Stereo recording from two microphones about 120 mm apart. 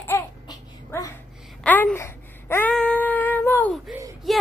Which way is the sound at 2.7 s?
10° left (ahead or behind).